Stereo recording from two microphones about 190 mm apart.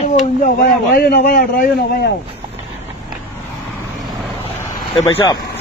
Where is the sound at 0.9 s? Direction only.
55° left (ahead or behind).